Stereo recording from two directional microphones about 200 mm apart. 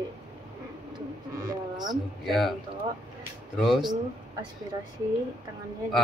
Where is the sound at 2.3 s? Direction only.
Centre (ahead or behind).